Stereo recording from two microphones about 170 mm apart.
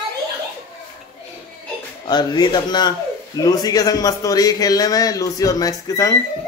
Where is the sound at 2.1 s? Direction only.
25° left (ahead or behind).